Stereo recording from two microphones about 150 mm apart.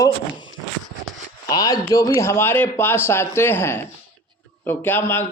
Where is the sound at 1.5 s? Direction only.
25° left (ahead or behind).